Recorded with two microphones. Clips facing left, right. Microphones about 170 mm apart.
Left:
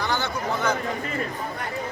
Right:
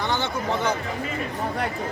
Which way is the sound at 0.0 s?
25° right (ahead or behind).